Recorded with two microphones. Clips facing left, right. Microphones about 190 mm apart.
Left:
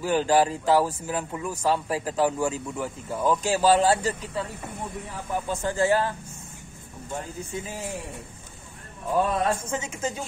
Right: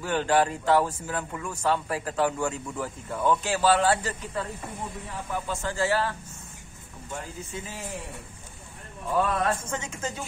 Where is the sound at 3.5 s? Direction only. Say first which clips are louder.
Left 4 dB; 15° left (ahead or behind).